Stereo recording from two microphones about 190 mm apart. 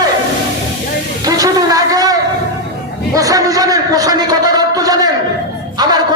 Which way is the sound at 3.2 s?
20° right (ahead or behind).